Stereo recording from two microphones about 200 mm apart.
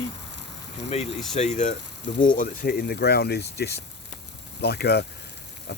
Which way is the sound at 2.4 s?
50° left (ahead or behind).